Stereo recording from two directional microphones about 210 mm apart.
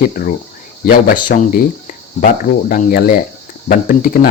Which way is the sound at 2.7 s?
40° left (ahead or behind).